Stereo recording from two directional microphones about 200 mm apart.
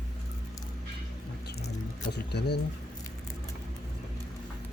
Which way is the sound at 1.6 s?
55° left (ahead or behind).